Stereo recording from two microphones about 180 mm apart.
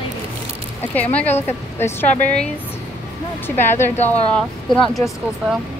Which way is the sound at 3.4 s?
10° left (ahead or behind).